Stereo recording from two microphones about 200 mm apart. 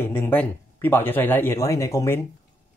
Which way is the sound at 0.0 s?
10° left (ahead or behind).